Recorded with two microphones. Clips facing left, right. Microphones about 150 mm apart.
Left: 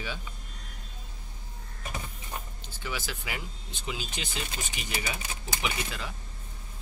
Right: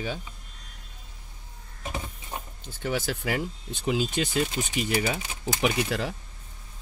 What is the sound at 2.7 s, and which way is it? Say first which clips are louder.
Speech: right 8 dB; 55° right (ahead or behind).